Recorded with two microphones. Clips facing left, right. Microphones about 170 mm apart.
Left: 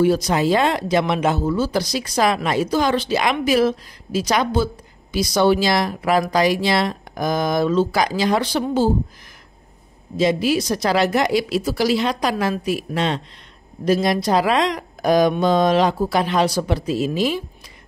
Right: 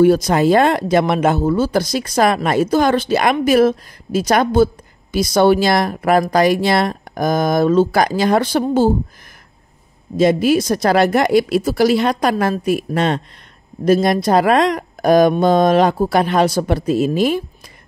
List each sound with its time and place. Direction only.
0.0 s speech: 55° right (ahead or behind)
10.1 s speech: 50° right (ahead or behind)